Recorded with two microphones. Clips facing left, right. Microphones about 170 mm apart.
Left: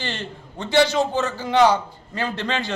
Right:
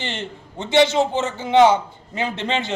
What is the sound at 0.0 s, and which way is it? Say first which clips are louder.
A man's voice: right 1 dB; 20° right (ahead or behind).